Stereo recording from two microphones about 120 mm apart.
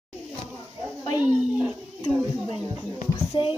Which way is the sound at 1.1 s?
10° right (ahead or behind).